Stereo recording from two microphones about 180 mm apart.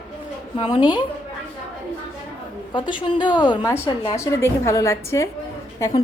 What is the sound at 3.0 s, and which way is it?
A woman's voice, 25° left (ahead or behind).